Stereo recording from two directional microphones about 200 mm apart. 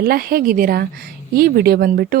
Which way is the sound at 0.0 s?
50° right (ahead or behind).